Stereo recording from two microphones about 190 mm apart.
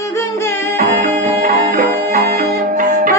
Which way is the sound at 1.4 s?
45° right (ahead or behind).